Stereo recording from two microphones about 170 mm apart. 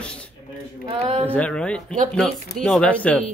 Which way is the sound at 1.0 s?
35° right (ahead or behind).